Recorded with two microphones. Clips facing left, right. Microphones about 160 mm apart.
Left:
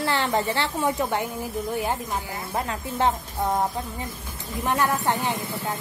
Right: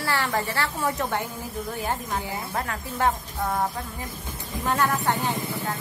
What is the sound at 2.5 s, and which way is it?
Speech, 20° left (ahead or behind).